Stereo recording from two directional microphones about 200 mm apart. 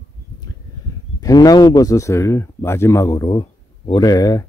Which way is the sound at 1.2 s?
20° left (ahead or behind).